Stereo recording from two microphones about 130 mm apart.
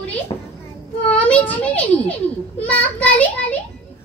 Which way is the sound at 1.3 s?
10° left (ahead or behind).